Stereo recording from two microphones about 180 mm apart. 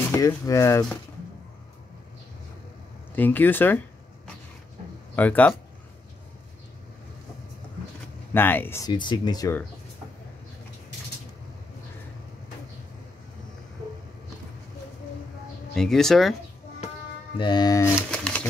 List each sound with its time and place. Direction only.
0.1 s speech: 15° left (ahead or behind)
3.2 s speech: 10° left (ahead or behind)
5.1 s speech: 10° left (ahead or behind)
8.3 s speech: 10° left (ahead or behind)
8.9 s speech: 25° left (ahead or behind)
15.7 s speech: centre (ahead or behind)
17.4 s speech: 25° left (ahead or behind)
18.1 s typewriter: 5° left (ahead or behind)